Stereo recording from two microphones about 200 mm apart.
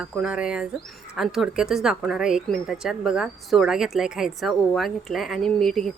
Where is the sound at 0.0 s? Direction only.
5° right (ahead or behind).